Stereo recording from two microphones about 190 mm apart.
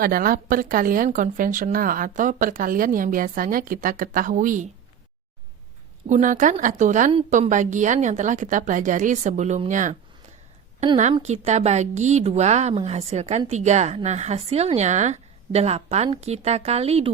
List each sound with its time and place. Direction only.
0.0 s speech: 50° right (ahead or behind)
6.1 s a woman's voice: 40° right (ahead or behind)
7.1 s a woman's voice: 30° right (ahead or behind)
7.3 s a woman's voice: 40° right (ahead or behind)
11.2 s a woman's voice: 35° right (ahead or behind)